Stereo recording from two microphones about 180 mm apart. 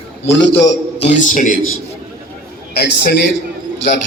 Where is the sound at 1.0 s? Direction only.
40° left (ahead or behind).